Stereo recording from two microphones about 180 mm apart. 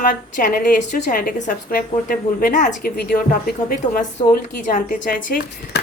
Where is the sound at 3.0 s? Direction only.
60° left (ahead or behind).